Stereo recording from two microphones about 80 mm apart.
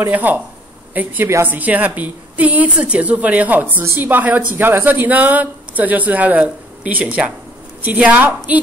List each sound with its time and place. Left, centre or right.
0.0 s speech: right